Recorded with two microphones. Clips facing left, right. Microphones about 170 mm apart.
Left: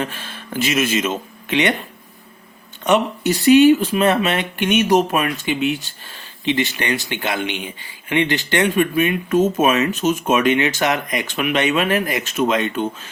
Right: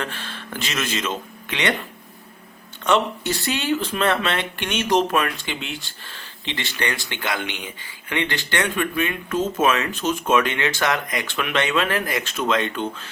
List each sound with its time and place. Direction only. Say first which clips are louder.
0.0 s speech: left 4 dB; 15° left (ahead or behind)
2.8 s speech: left 3 dB; 15° left (ahead or behind)